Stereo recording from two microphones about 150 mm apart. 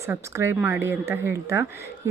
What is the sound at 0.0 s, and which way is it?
Speech, 20° right (ahead or behind).